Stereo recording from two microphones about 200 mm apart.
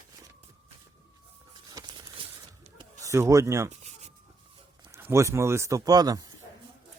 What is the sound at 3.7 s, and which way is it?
Chicken, 35° right (ahead or behind).